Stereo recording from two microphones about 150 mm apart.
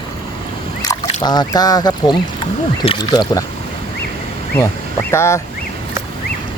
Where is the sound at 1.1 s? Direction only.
25° left (ahead or behind).